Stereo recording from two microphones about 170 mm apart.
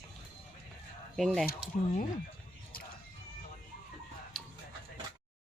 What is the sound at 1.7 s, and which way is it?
Speech, 50° left (ahead or behind).